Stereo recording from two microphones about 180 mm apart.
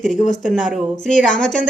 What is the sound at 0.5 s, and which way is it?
A woman's voice, centre (ahead or behind).